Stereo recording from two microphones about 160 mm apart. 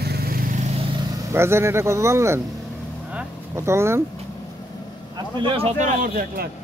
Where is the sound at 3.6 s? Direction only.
15° right (ahead or behind).